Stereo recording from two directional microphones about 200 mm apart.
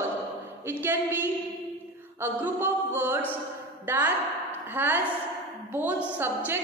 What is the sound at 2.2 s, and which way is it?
A woman's voice, 10° right (ahead or behind).